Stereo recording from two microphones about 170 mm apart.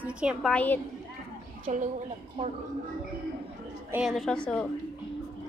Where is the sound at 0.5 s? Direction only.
10° left (ahead or behind).